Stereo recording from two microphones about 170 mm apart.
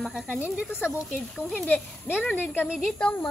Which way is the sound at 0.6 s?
15° left (ahead or behind).